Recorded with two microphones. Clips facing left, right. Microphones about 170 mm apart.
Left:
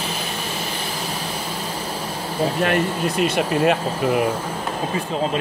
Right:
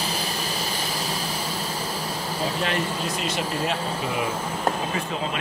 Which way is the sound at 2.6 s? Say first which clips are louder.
Left 6 dB; 55° left (ahead or behind).